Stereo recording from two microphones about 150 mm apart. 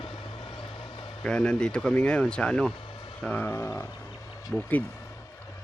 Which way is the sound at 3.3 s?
15° left (ahead or behind).